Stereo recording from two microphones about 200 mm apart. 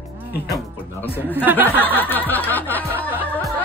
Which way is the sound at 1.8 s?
10° left (ahead or behind).